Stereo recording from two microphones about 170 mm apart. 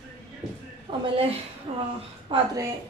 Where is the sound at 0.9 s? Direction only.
30° right (ahead or behind).